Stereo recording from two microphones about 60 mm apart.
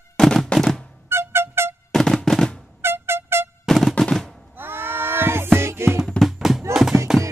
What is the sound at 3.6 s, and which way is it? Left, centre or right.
Music, centre.